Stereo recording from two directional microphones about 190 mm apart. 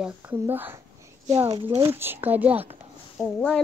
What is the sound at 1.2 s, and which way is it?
Speech, 30° right (ahead or behind).